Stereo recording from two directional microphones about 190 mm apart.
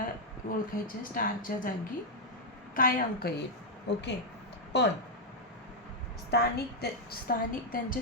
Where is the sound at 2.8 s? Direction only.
50° left (ahead or behind).